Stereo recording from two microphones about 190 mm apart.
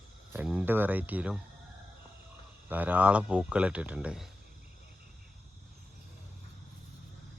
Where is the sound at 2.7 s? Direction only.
10° right (ahead or behind).